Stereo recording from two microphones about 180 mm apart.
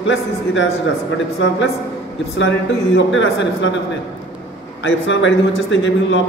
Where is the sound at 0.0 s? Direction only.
90° left.